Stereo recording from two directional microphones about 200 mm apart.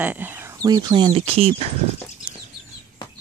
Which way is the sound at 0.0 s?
10° right (ahead or behind).